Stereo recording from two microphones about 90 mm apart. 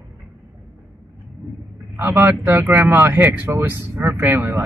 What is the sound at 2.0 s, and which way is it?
Speech, 25° right (ahead or behind).